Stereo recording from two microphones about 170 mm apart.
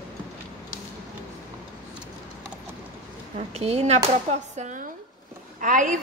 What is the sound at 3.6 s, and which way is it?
A woman's voice, 40° right (ahead or behind).